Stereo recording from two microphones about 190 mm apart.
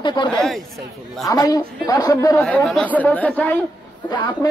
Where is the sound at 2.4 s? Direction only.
Centre (ahead or behind).